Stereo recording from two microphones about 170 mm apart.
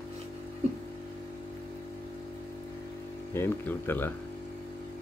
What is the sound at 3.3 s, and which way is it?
Speech, 15° left (ahead or behind).